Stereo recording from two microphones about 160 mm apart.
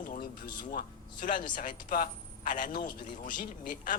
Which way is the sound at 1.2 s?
55° left (ahead or behind).